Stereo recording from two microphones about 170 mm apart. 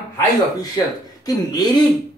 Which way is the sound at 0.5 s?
20° left (ahead or behind).